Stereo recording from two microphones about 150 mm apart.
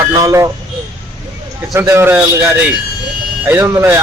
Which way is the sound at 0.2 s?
25° right (ahead or behind).